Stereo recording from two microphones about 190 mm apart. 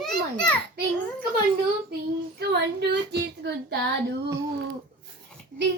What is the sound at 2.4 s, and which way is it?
Child singing, 60° right (ahead or behind).